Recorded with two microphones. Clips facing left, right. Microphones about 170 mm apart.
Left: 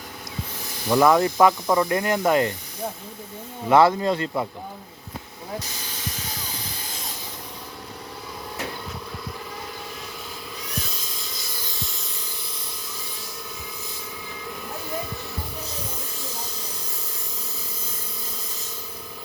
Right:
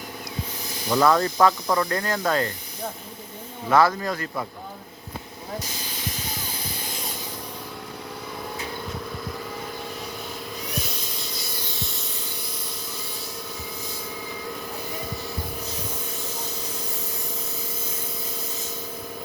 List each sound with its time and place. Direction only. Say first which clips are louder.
0.9 s speech: left 2 dB; 15° left (ahead or behind)
3.7 s speech: left 3 dB; 25° left (ahead or behind)